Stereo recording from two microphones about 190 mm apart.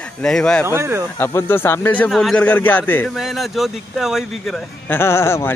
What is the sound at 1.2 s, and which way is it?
Speech, 15° left (ahead or behind).